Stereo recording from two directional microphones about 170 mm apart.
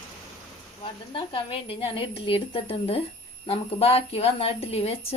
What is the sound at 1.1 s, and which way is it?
A woman's voice, 30° left (ahead or behind).